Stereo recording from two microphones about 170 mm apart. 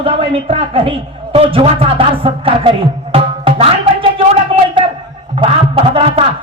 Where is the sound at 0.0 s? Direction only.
35° right (ahead or behind).